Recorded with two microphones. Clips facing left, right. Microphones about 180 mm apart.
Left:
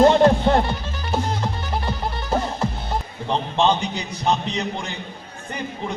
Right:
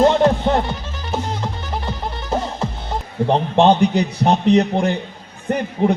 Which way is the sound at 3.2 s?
60° right (ahead or behind).